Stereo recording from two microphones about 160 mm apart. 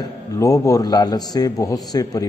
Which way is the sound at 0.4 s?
20° left (ahead or behind).